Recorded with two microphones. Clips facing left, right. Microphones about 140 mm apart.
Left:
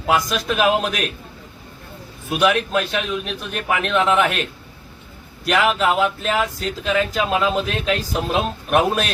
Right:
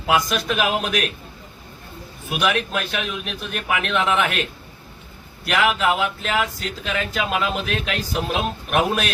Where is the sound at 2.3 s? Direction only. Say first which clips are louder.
Left 4 dB; 25° left (ahead or behind).